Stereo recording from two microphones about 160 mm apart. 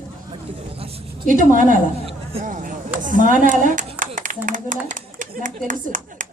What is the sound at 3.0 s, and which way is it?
Speech, 55° right (ahead or behind).